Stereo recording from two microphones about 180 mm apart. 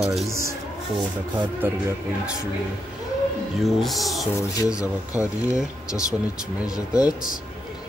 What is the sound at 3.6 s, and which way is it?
Speech, centre (ahead or behind).